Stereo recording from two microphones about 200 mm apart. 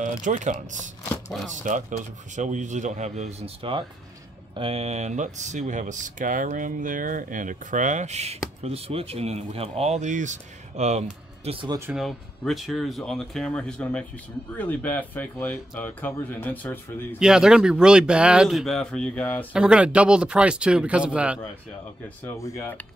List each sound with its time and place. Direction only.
0.0 s speech: 40° right (ahead or behind)
11.9 s speech: centre (ahead or behind)
17.2 s speech: 5° right (ahead or behind)
19.5 s speech: 5° right (ahead or behind)
22.2 s speech: 15° left (ahead or behind)